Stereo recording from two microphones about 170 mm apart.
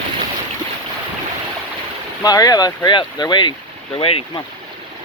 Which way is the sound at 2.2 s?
20° left (ahead or behind).